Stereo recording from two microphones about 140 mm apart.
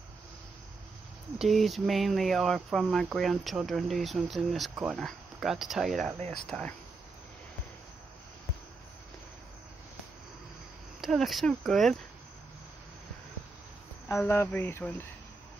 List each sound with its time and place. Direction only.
1.4 s speech: centre (ahead or behind)
11.0 s speech: centre (ahead or behind)
14.0 s speech: 20° left (ahead or behind)